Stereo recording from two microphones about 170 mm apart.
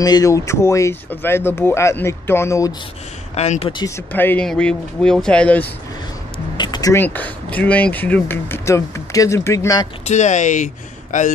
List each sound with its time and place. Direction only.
0.0 s speech: 20° left (ahead or behind)
3.3 s speech: 40° left (ahead or behind)
3.7 s speech: 20° left (ahead or behind)
6.5 s speech: 25° left (ahead or behind)
10.0 s speech: 45° left (ahead or behind)